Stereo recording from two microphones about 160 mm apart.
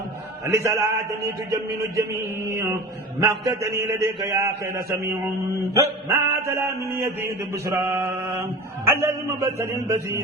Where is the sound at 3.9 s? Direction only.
20° right (ahead or behind).